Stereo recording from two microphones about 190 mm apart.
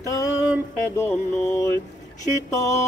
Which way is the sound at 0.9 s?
15° left (ahead or behind).